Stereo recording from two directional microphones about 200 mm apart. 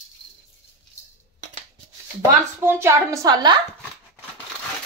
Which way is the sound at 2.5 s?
10° right (ahead or behind).